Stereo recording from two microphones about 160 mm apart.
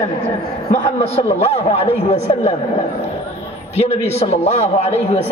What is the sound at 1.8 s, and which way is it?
Speech, 45° left (ahead or behind).